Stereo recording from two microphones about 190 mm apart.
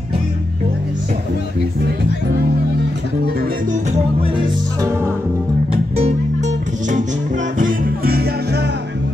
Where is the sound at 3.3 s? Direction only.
50° right (ahead or behind).